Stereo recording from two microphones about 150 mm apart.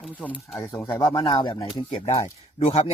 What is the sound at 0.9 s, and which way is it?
Speech, 30° left (ahead or behind).